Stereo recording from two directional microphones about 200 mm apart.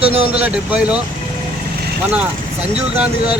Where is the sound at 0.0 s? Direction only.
30° right (ahead or behind).